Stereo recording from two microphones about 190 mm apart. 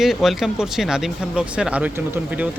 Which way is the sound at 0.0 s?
Centre (ahead or behind).